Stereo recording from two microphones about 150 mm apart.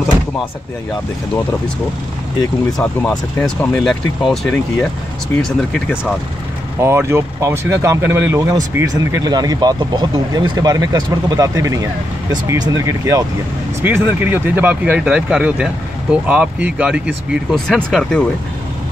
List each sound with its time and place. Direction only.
2.8 s speech: 5° left (ahead or behind)
5.7 s speech: 5° left (ahead or behind)
6.8 s speech: 15° right (ahead or behind); by 18.2 s 5° left (ahead or behind)